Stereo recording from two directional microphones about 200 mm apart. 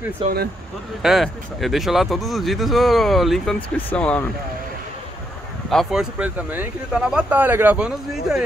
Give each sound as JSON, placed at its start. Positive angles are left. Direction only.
{"t": 0.2, "sound": "speech", "side_deg": -25}
{"t": 1.0, "sound": "speech", "side_deg": 0}
{"t": 5.7, "sound": "speech", "side_deg": 0}